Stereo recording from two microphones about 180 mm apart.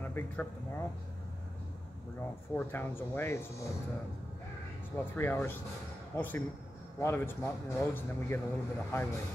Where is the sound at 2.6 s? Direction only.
10° left (ahead or behind).